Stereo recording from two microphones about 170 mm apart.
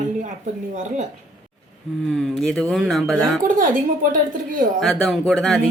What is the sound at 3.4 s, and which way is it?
Speech, 50° right (ahead or behind).